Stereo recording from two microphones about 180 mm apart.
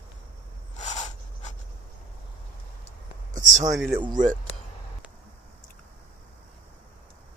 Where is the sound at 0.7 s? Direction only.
45° left (ahead or behind).